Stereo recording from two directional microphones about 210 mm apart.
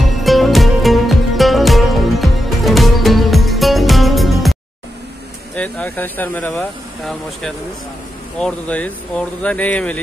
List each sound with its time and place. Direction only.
0.2 s music: centre (ahead or behind)
5.6 s speech: 5° left (ahead or behind)